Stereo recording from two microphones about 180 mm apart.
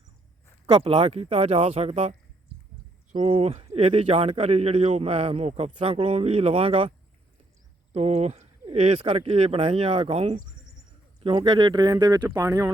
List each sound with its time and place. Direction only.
0.7 s speech: 30° right (ahead or behind)
7.9 s speech: 35° right (ahead or behind)
11.2 s speech: 25° right (ahead or behind)